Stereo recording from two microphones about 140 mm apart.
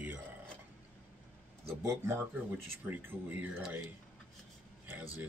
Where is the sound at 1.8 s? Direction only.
20° right (ahead or behind).